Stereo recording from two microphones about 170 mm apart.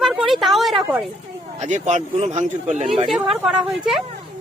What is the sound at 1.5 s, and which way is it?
Speech, 45° right (ahead or behind).